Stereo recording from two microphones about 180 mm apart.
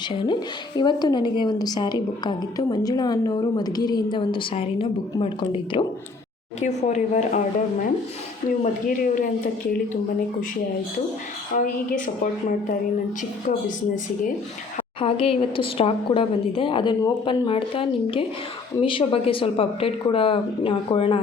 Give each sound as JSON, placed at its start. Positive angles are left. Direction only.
{"t": 0.1, "sound": "a woman's voice", "side_deg": 25}
{"t": 11.5, "sound": "a woman's voice", "side_deg": 45}
{"t": 15.0, "sound": "a woman's voice", "side_deg": 30}